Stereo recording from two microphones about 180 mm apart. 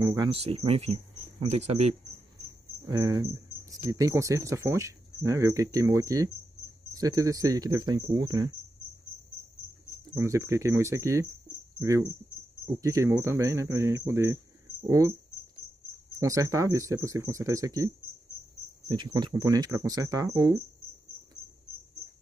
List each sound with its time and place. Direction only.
0.0 s speech: 20° right (ahead or behind)
0.3 s speech: 30° right (ahead or behind)
2.9 s speech: 20° right (ahead or behind)
10.1 s speech: 15° right (ahead or behind)
16.2 s speech: 15° right (ahead or behind)